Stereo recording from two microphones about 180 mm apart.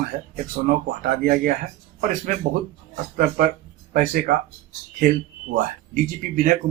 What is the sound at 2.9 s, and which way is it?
Speech, 55° right (ahead or behind).